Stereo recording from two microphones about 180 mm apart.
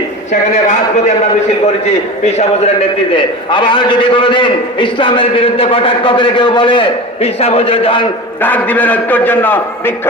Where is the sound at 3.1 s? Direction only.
25° left (ahead or behind).